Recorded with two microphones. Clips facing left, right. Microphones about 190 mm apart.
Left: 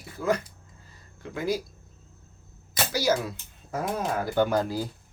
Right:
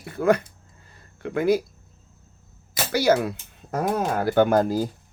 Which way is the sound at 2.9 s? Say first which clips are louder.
Right 6 dB; 60° right (ahead or behind).